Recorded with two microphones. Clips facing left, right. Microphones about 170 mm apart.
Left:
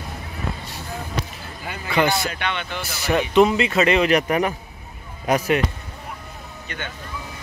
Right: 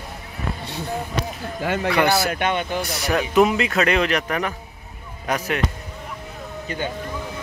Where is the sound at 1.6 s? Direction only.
75° right (ahead or behind).